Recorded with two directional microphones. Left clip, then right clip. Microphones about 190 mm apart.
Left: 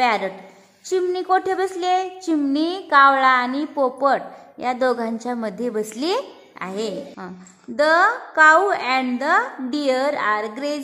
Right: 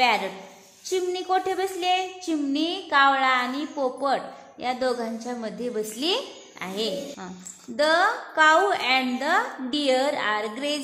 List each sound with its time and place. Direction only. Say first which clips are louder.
0.0 s a woman's voice: left 2 dB; 30° left (ahead or behind)